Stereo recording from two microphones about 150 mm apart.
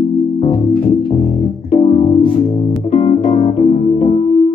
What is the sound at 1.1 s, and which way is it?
Music, 35° left (ahead or behind).